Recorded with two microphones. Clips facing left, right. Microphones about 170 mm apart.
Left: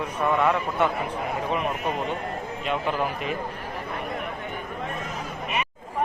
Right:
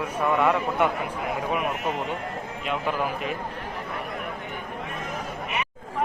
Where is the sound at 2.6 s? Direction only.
5° right (ahead or behind).